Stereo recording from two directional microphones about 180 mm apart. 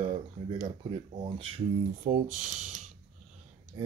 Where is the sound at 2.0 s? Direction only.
45° right (ahead or behind).